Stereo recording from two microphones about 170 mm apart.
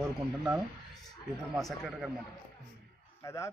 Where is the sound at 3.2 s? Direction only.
15° left (ahead or behind).